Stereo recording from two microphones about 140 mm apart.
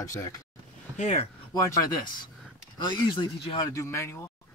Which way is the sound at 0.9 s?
50° left (ahead or behind).